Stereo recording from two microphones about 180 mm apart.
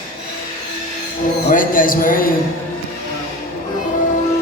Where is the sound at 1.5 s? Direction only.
50° left (ahead or behind).